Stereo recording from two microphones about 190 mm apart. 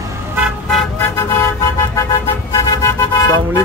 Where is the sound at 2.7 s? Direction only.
15° left (ahead or behind).